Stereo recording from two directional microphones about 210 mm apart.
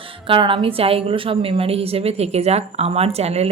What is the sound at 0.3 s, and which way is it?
A woman's voice, 25° right (ahead or behind).